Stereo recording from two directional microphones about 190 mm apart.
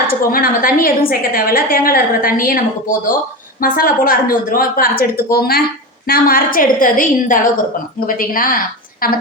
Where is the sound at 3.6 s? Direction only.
50° left (ahead or behind).